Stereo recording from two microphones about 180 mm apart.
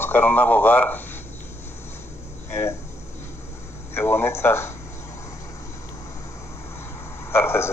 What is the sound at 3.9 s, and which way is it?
Speech, 15° left (ahead or behind).